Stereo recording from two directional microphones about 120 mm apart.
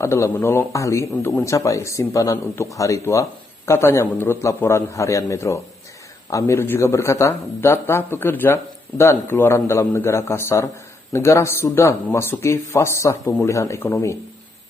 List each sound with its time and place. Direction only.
0.0 s a man's voice: 25° left (ahead or behind)